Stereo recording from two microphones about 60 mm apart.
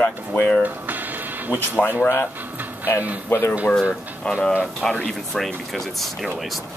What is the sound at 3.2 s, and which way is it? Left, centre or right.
Speech, left.